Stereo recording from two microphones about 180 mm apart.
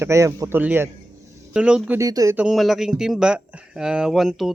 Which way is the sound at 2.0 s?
20° right (ahead or behind).